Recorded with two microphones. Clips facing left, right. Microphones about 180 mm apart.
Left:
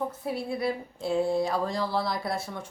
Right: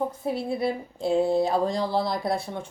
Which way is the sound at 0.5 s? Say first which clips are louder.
Right 3 dB; 25° right (ahead or behind).